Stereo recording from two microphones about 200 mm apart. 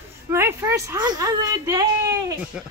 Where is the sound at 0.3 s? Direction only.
10° right (ahead or behind).